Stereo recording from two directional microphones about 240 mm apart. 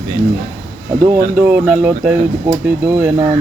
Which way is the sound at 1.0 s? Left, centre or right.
Centre.